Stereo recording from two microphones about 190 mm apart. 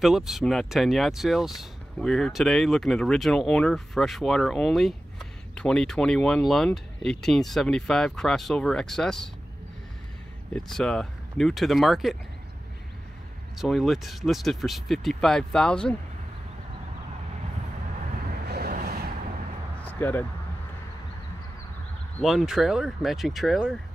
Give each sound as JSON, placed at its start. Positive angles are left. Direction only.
{"t": 0.0, "sound": "speech", "side_deg": 0}
{"t": 10.5, "sound": "speech", "side_deg": 5}
{"t": 13.6, "sound": "speech", "side_deg": 0}
{"t": 18.5, "sound": "a sound", "side_deg": -50}
{"t": 19.8, "sound": "a sound", "side_deg": 10}
{"t": 22.2, "sound": "speech", "side_deg": 0}